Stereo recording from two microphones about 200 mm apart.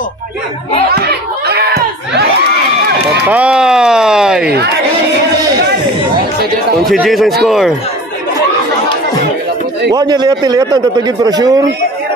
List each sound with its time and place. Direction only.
0.9 s a sound: 55° right (ahead or behind)
3.3 s speech: 5° right (ahead or behind)
6.8 s speech: centre (ahead or behind)
9.9 s a man's voice: 20° right (ahead or behind)